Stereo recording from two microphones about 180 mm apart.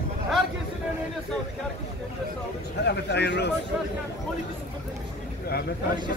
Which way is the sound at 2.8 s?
70° left (ahead or behind).